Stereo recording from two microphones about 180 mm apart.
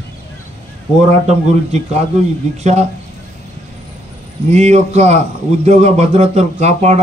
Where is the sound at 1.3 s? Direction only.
40° right (ahead or behind).